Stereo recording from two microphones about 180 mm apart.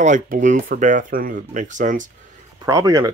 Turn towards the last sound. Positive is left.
turn(degrees=-15)  # may be behind; listen again after turning